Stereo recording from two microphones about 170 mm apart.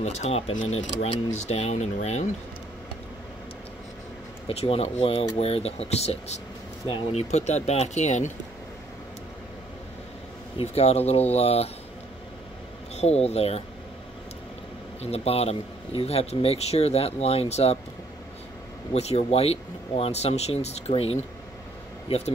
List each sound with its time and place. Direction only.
0.0 s speech: 40° left (ahead or behind)
4.5 s speech: 35° left (ahead or behind)
10.6 s speech: 35° left (ahead or behind)
12.9 s speech: 40° left (ahead or behind)
15.0 s speech: 35° left (ahead or behind)
18.9 s speech: 40° left (ahead or behind)